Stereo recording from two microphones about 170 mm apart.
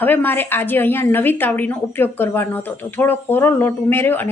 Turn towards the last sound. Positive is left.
turn(degrees=10)  # may be behind; listen again after turning